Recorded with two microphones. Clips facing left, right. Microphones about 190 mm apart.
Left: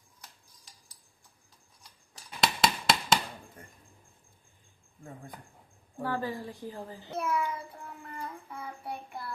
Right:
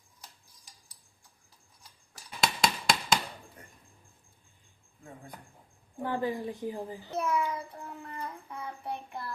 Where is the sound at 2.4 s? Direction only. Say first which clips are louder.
Left 1 dB; centre (ahead or behind).